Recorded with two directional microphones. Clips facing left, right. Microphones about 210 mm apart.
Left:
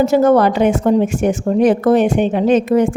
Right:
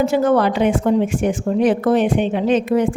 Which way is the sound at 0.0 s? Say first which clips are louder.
Left 4 dB; 40° left (ahead or behind).